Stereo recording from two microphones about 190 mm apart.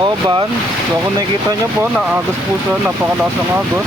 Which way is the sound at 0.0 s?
25° right (ahead or behind).